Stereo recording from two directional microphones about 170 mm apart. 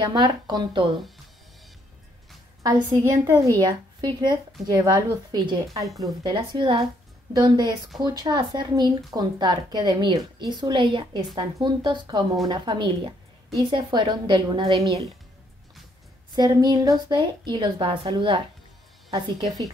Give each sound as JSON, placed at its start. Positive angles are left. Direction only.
{"t": 0.0, "sound": "a woman's voice", "side_deg": -30}
{"t": 2.6, "sound": "a woman's voice", "side_deg": -20}
{"t": 16.3, "sound": "a woman's voice", "side_deg": -25}